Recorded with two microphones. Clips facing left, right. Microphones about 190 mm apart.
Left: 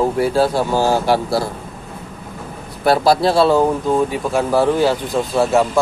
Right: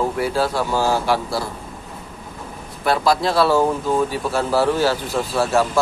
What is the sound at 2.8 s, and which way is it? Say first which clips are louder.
Speech: left 4 dB; 35° left (ahead or behind).